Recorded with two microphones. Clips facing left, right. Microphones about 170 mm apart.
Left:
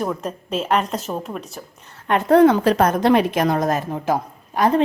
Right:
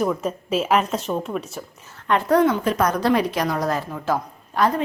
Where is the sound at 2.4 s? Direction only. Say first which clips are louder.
Left 6 dB; 80° left.